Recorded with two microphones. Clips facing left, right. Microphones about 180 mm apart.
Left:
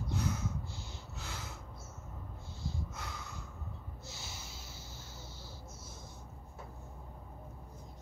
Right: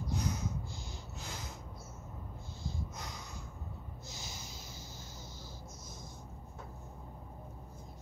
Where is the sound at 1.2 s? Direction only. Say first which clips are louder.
Even; 15° right (ahead or behind).